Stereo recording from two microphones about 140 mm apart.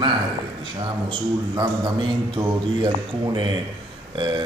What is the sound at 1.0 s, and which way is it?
Mantra, 35° right (ahead or behind).